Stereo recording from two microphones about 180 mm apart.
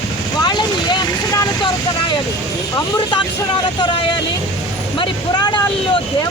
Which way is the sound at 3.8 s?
30° left (ahead or behind).